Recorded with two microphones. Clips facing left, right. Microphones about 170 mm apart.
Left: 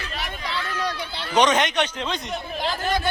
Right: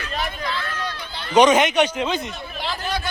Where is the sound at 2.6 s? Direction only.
45° left (ahead or behind).